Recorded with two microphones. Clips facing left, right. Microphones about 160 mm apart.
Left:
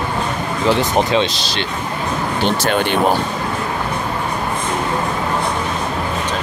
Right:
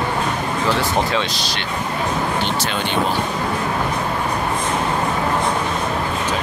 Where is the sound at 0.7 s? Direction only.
20° left (ahead or behind).